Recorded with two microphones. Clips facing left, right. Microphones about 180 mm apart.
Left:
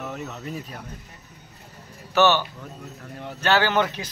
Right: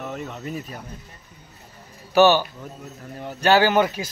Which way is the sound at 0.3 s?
5° right (ahead or behind).